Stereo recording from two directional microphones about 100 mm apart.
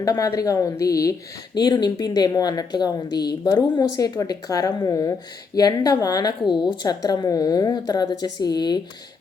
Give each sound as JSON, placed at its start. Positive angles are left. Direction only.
{"t": 0.0, "sound": "a woman's voice", "side_deg": 35}
{"t": 1.5, "sound": "a woman's voice", "side_deg": 45}